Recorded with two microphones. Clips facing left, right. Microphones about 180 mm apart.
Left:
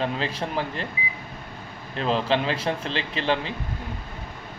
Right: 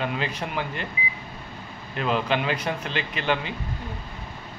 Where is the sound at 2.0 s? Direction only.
30° left (ahead or behind).